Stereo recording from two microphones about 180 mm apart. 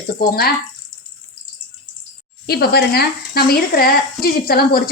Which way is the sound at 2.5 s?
60° left (ahead or behind).